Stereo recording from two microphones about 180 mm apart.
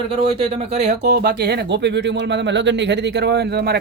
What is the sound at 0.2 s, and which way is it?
Speech, 35° right (ahead or behind).